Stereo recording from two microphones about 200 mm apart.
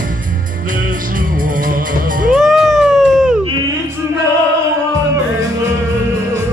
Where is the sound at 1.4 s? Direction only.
40° right (ahead or behind).